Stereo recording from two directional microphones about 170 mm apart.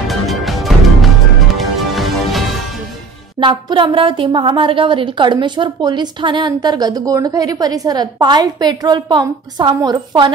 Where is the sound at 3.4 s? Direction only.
30° right (ahead or behind).